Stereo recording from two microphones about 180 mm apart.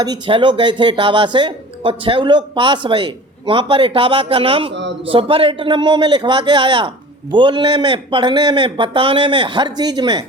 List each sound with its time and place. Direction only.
0.0 s a man's voice: 25° right (ahead or behind)
4.7 s speech: 75° right (ahead or behind)
5.0 s a man's voice: 30° right (ahead or behind)